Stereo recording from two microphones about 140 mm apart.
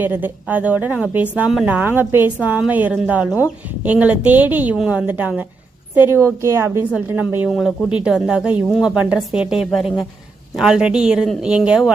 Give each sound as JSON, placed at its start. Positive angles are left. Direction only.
{"t": 0.0, "sound": "a woman's voice", "side_deg": -10}
{"t": 7.5, "sound": "a woman's voice", "side_deg": 0}